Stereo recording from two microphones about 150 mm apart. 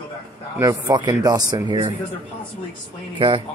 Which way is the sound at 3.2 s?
35° right (ahead or behind).